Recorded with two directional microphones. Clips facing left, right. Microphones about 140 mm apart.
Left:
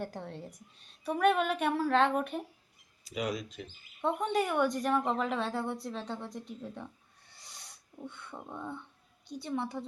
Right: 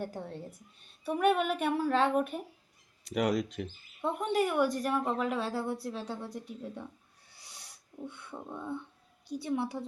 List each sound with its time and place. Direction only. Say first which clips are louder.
0.0 s speech: right 1 dB; 10° right (ahead or behind)
3.0 s speech: right 6 dB; 70° right (ahead or behind)
4.0 s a woman's voice: even; 5° right (ahead or behind)
7.3 s snort: even; 10° right (ahead or behind)
8.5 s speech: right 3 dB; 10° right (ahead or behind)